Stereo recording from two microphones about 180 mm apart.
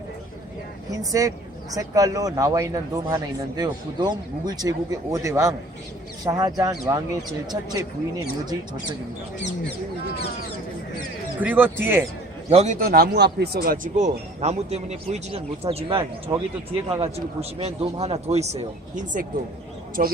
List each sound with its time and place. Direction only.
0.9 s speech: 20° right (ahead or behind)
11.3 s speech: 10° right (ahead or behind)
12.5 s speech: 40° right (ahead or behind)
12.8 s speech: 60° right (ahead or behind); by 16.0 s 30° right (ahead or behind)
16.3 s speech: 10° right (ahead or behind)
17.6 s speech: 35° right (ahead or behind); by 20.1 s 50° right (ahead or behind)